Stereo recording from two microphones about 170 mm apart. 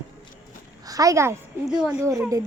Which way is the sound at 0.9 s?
20° right (ahead or behind).